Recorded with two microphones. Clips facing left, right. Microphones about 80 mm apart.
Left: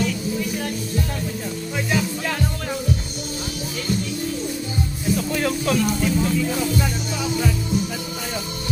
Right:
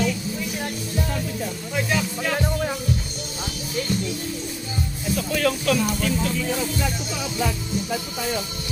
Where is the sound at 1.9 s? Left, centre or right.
Centre.